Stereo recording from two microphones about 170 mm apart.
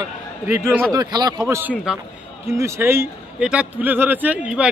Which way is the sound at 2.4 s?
15° right (ahead or behind).